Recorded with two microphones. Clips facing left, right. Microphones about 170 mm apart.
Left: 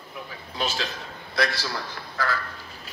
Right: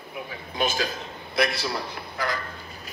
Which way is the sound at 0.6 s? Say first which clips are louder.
Right 3 dB; 50° right (ahead or behind).